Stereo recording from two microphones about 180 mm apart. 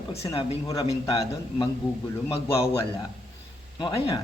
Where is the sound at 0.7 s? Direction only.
20° left (ahead or behind).